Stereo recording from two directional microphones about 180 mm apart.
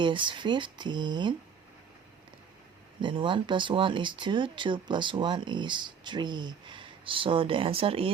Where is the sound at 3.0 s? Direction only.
25° right (ahead or behind).